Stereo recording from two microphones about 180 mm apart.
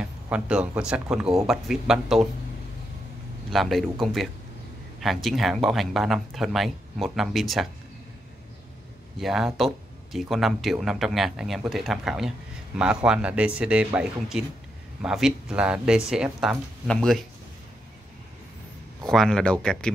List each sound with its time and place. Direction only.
0.0 s speech: 5° right (ahead or behind)
3.5 s speech: centre (ahead or behind)
9.2 s speech: centre (ahead or behind)
19.0 s speech: 5° left (ahead or behind)